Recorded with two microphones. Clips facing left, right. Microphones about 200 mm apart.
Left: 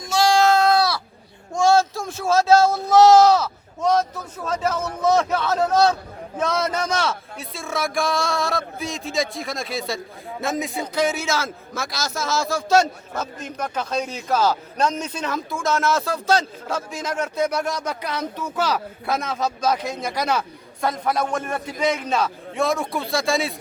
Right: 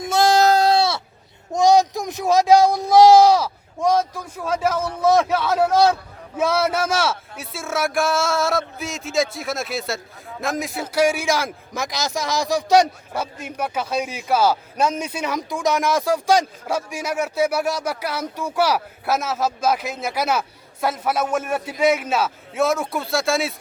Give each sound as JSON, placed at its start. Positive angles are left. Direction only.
{"t": 0.0, "sound": "sheep", "side_deg": -50}
{"t": 1.5, "sound": "a man's voice", "side_deg": -15}